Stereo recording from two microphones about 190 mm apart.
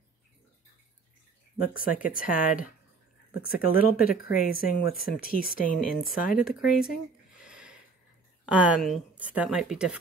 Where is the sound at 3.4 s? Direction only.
50° left (ahead or behind).